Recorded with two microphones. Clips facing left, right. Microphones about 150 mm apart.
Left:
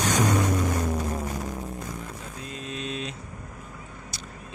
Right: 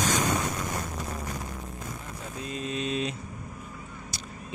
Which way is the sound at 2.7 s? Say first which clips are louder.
Right 3 dB; 5° right (ahead or behind).